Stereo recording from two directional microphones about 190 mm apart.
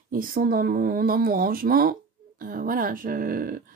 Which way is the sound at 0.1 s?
50° right (ahead or behind).